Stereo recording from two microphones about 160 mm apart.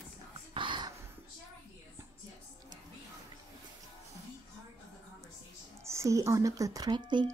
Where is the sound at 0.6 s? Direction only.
30° right (ahead or behind).